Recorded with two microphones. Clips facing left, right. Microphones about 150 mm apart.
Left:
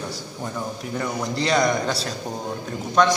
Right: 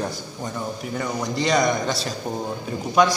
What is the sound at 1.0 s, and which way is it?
A man's voice, centre (ahead or behind).